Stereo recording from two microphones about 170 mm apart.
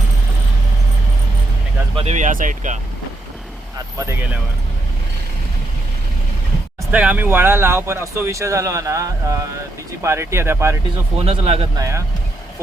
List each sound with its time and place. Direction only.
2.0 s speech: 40° right (ahead or behind)
3.9 s speech: 15° right (ahead or behind)
6.9 s speech: 10° right (ahead or behind)
11.2 s a man's voice: 35° right (ahead or behind)
11.8 s speech: 15° right (ahead or behind)